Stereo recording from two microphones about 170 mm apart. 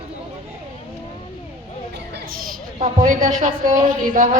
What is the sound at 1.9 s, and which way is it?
Children playing, 80° right.